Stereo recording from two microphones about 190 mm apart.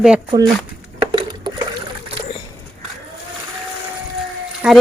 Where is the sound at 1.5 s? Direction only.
25° right (ahead or behind).